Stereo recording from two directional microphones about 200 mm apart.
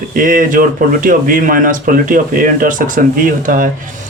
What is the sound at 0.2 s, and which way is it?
Speech, 45° right (ahead or behind).